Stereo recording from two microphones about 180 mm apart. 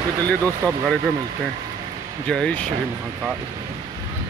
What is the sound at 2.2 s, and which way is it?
Speech, 5° left (ahead or behind).